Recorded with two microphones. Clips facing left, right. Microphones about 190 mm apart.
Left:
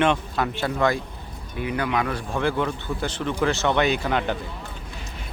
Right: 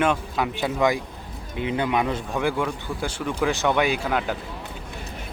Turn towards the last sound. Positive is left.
turn(degrees=-5)  # may be behind; listen again after turning